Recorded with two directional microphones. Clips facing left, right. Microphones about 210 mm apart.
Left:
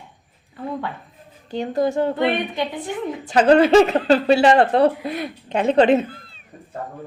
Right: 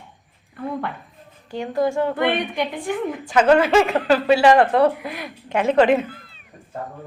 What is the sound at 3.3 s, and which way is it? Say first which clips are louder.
Speech: left 3 dB; 35° left (ahead or behind).